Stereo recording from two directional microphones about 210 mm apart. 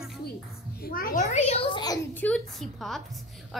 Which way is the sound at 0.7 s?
45° left (ahead or behind).